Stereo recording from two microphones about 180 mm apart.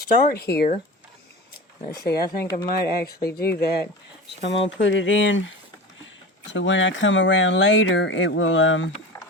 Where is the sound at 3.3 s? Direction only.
60° left (ahead or behind).